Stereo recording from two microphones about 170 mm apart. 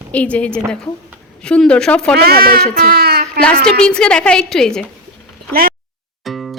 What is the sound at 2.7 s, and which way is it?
Child singing, 60° right (ahead or behind).